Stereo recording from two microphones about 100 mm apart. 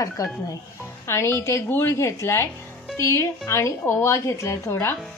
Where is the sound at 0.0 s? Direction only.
35° left (ahead or behind).